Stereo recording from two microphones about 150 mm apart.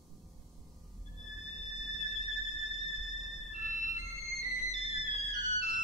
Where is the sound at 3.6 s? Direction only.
55° left (ahead or behind).